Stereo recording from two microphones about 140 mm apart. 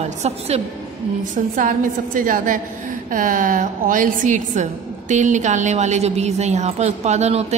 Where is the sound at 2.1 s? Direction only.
75° right (ahead or behind).